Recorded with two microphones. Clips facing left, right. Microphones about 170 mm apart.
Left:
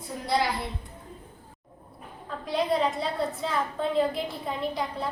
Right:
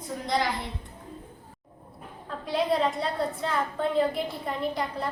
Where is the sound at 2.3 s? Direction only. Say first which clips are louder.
Even; centre (ahead or behind).